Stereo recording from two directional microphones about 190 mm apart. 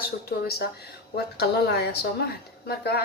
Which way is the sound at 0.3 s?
55° left (ahead or behind).